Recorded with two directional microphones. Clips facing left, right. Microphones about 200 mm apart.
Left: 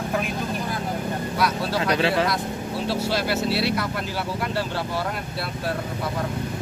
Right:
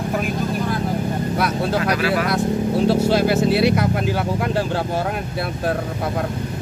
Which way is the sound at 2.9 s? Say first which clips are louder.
Right 6 dB; 50° right (ahead or behind).